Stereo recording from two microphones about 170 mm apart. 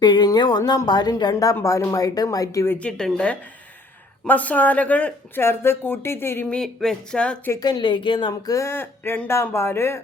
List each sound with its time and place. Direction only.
0.0 s a woman's voice: 25° left (ahead or behind)
2.7 s speech: 5° left (ahead or behind)
7.5 s speech: 25° left (ahead or behind)